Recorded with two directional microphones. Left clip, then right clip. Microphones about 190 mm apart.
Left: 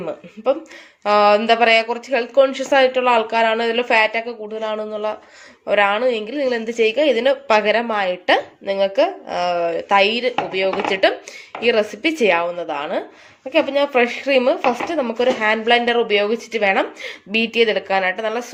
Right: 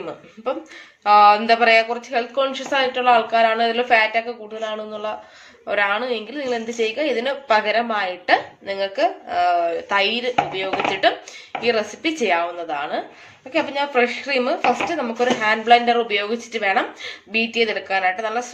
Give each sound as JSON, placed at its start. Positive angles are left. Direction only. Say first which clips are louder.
{"t": 1.0, "sound": "a woman's voice", "louder": "right 1 dB", "side_deg": 45}